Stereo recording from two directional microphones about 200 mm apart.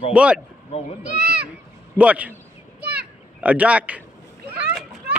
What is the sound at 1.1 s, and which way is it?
Speech, 50° right (ahead or behind).